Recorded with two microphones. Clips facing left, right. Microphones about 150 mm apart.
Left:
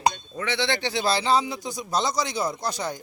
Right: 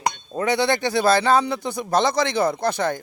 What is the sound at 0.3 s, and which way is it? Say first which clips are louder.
Speech: right 6 dB; 45° right (ahead or behind).